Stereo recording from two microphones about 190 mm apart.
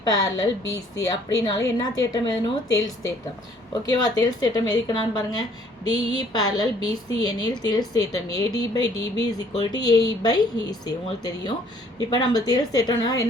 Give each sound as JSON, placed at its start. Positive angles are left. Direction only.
{"t": 0.0, "sound": "a woman's voice", "side_deg": 20}